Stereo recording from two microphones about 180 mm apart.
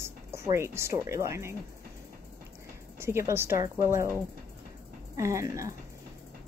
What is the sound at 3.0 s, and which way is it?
Speech, 15° right (ahead or behind).